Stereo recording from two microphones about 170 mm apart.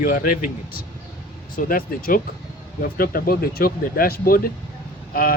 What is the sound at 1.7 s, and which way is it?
Speech, 60° left (ahead or behind).